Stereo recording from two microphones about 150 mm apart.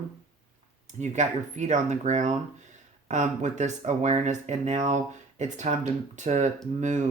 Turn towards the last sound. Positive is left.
turn(degrees=-55)  # may be behind; listen again after turning